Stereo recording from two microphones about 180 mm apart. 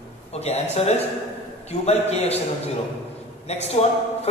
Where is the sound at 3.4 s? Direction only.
35° left (ahead or behind).